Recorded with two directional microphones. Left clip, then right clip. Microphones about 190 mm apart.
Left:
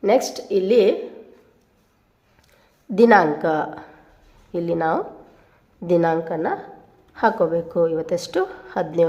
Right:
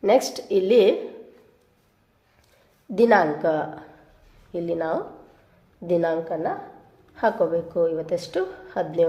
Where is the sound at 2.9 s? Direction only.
15° left (ahead or behind).